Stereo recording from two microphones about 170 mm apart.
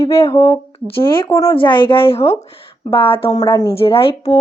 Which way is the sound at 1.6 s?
30° left (ahead or behind).